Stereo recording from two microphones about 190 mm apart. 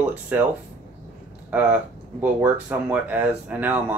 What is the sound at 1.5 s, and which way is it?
Speech, 10° right (ahead or behind).